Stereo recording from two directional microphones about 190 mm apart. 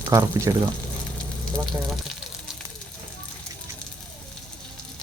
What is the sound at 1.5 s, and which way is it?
Speech, centre (ahead or behind).